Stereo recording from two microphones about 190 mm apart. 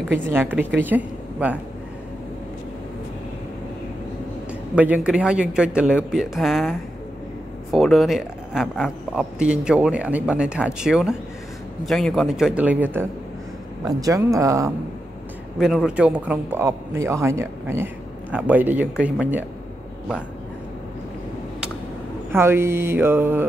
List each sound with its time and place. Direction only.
0.3 s a woman's voice: 10° right (ahead or behind)
4.7 s a man's voice: 5° right (ahead or behind)
13.8 s speech: 15° right (ahead or behind)
15.6 s speech: centre (ahead or behind)
22.3 s speech: 15° right (ahead or behind)